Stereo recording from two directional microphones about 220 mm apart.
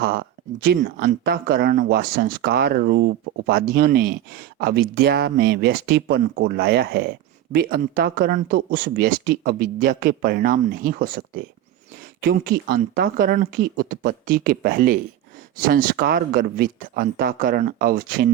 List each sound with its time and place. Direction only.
0.0 s speech: 45° right (ahead or behind)